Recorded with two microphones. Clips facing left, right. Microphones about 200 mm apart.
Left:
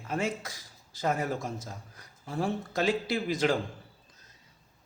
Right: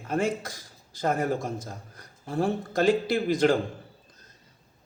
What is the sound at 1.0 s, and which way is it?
Speech, 50° right (ahead or behind).